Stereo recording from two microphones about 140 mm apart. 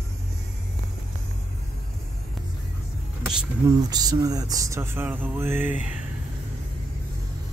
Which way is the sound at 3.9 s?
30° right (ahead or behind).